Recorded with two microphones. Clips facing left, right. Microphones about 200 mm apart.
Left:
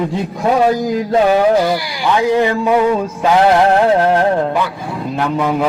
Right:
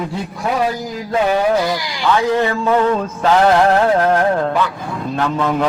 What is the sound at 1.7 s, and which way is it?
A man's voice, 15° left (ahead or behind).